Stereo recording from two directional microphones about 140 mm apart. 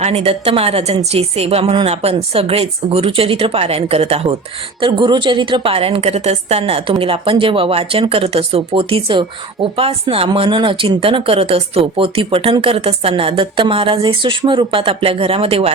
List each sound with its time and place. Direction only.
0.0 s a woman's voice: 50° right (ahead or behind)
4.8 s speech: 35° right (ahead or behind)